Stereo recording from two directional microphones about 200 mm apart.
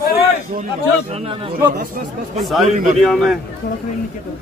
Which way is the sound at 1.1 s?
30° right (ahead or behind).